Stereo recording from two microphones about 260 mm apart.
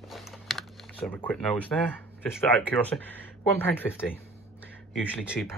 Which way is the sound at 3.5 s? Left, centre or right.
Centre.